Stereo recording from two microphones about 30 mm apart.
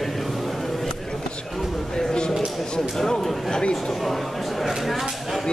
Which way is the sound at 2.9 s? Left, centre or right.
Centre.